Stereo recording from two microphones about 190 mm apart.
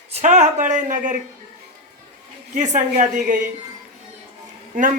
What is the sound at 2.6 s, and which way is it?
Speech, 40° right (ahead or behind).